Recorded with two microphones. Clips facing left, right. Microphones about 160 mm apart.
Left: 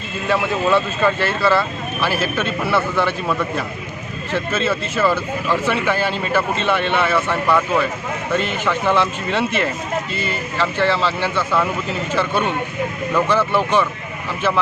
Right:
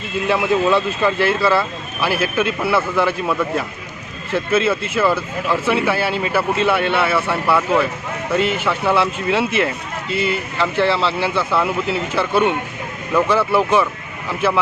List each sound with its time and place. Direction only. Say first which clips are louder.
0.3 s speech: right 1 dB; 10° right (ahead or behind)
4.5 s speech: right 5 dB; 10° right (ahead or behind)